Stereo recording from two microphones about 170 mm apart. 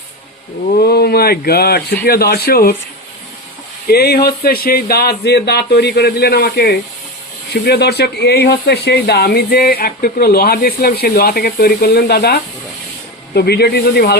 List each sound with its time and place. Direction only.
0.8 s speech: 65° left (ahead or behind)
3.8 s speech: 65° left (ahead or behind)